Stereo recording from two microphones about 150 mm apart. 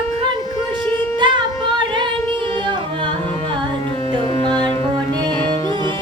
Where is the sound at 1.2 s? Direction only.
30° right (ahead or behind).